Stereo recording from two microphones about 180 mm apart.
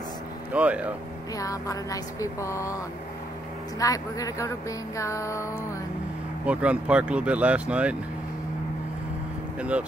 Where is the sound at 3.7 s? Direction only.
20° left (ahead or behind).